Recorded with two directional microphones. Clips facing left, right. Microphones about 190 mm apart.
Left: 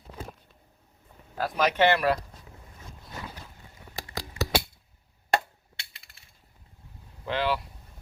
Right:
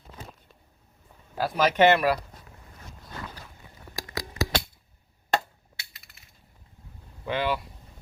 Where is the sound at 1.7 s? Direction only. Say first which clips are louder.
Right 4 dB; 20° right (ahead or behind).